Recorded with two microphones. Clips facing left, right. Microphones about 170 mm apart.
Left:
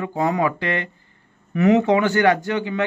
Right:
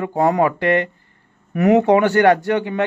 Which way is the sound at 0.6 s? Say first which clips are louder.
Right 8 dB; 60° right (ahead or behind).